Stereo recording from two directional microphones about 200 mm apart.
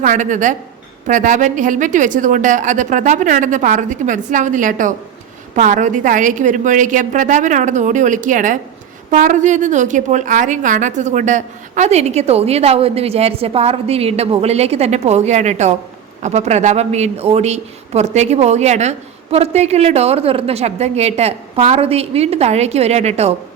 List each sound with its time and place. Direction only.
0.0 s speech: 40° right (ahead or behind)